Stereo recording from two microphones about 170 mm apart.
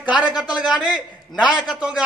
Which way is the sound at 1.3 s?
25° left (ahead or behind).